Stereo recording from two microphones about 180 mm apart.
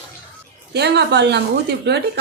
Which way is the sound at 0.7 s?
65° right (ahead or behind).